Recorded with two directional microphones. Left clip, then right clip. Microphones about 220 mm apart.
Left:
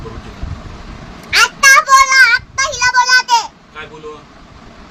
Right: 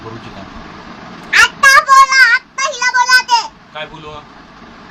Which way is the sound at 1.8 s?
10° left (ahead or behind).